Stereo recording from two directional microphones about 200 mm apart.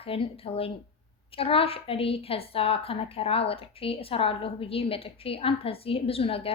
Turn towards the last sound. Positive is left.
turn(degrees=30)  # may be behind; listen again after turning